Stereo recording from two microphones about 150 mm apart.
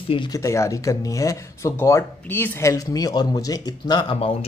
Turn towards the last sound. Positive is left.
turn(degrees=30)  # may be behind; listen again after turning